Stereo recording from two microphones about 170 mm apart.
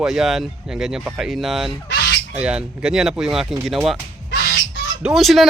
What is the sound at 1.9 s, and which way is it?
Goose, 65° left (ahead or behind).